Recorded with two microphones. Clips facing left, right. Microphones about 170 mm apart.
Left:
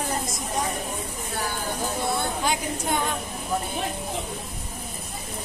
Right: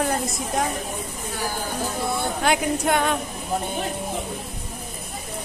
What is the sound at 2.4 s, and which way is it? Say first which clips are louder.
Speech: right 6 dB; 70° right (ahead or behind).